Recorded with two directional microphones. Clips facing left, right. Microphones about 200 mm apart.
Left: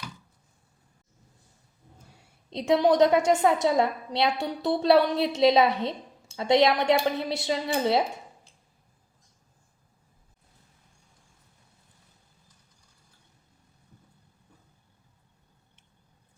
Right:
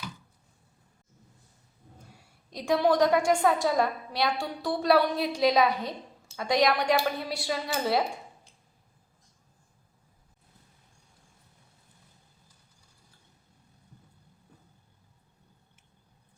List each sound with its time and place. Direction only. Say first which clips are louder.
2.5 s a woman's voice: left 3 dB; 25° left (ahead or behind)